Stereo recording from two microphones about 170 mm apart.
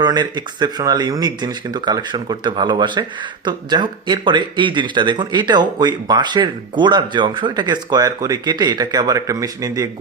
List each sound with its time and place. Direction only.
0.0 s speech: 25° right (ahead or behind)